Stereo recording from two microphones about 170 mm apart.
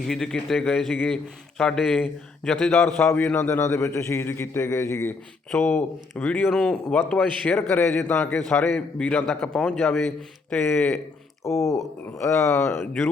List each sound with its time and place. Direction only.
0.1 s a man's voice: centre (ahead or behind)
11.4 s speech: 15° left (ahead or behind)